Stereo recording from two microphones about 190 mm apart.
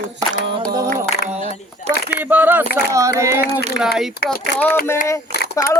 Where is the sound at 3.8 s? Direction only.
65° right (ahead or behind).